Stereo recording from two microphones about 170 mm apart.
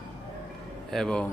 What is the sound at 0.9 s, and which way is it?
Speech, 5° left (ahead or behind).